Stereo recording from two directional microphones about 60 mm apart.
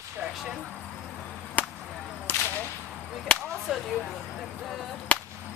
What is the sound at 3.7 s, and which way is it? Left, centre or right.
Speech, centre.